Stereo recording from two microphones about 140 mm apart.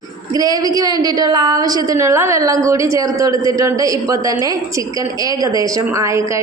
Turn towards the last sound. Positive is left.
turn(degrees=-20)  # may be behind; listen again after turning